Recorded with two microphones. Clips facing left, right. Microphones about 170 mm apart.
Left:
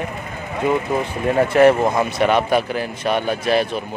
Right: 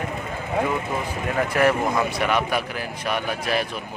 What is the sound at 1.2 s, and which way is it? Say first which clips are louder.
Speech: left 8 dB; 30° left (ahead or behind).